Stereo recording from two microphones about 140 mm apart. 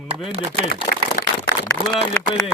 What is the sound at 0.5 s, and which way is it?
Speech, 90° left.